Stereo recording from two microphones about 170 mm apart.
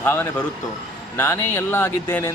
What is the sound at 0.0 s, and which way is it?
A man's voice, 10° left (ahead or behind).